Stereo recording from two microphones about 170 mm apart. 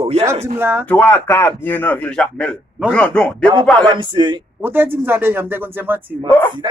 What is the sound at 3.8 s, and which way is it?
Speech, 30° right (ahead or behind).